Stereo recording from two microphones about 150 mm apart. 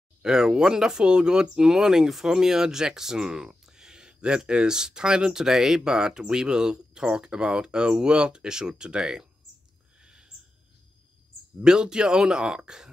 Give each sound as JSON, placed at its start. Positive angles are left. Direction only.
{"t": 0.2, "sound": "speech", "side_deg": -5}
{"t": 11.6, "sound": "speech", "side_deg": -5}